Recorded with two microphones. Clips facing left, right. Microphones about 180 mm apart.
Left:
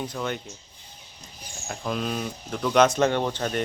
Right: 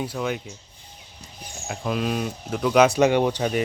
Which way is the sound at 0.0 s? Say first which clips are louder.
Right 3 dB; 5° right (ahead or behind).